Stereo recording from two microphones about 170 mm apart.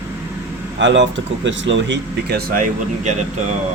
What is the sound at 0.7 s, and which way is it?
Speech, 90° right.